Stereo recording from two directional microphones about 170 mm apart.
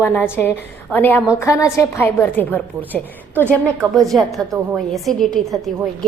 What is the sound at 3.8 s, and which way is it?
Speech, 20° right (ahead or behind).